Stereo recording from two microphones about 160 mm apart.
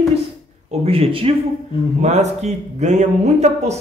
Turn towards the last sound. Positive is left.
turn(degrees=-45)  # may be behind; listen again after turning